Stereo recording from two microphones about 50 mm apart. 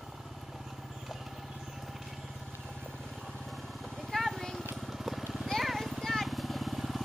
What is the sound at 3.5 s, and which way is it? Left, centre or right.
Vehicle, centre.